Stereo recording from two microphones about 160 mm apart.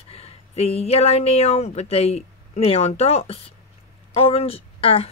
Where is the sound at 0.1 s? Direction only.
40° left (ahead or behind).